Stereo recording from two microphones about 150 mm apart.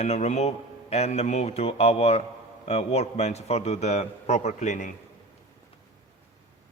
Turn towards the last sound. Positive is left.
turn(degrees=55)  # may be behind; listen again after turning